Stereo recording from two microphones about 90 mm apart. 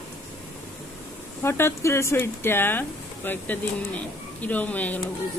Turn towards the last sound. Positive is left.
turn(degrees=15)  # may be behind; listen again after turning